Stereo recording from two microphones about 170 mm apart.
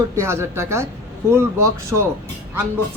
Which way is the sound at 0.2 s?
15° right (ahead or behind).